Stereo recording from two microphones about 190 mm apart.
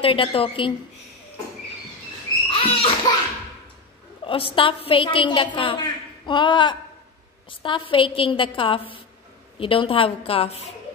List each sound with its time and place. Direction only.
0.0 s a woman's voice: 30° left (ahead or behind)
2.5 s a sound: 30° left (ahead or behind)
4.2 s a woman's voice: 30° left (ahead or behind)